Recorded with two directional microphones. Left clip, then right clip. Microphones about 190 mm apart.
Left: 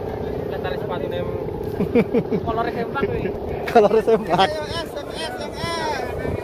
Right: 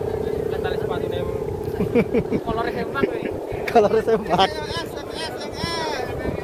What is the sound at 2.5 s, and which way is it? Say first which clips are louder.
Vehicle: left 1 dB; 40° left (ahead or behind).